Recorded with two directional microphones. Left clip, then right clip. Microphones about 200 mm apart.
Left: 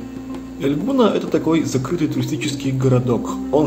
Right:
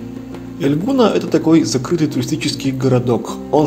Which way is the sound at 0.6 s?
35° right (ahead or behind).